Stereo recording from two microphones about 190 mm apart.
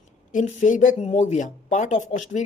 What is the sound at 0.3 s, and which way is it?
Speech, 40° left (ahead or behind).